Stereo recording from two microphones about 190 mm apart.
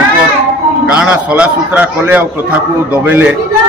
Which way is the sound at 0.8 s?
5° right (ahead or behind).